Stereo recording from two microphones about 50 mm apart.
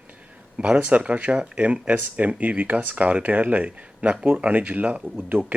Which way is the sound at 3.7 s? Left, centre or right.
Right.